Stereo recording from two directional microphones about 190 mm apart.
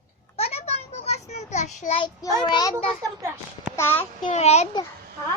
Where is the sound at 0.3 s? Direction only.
30° left (ahead or behind).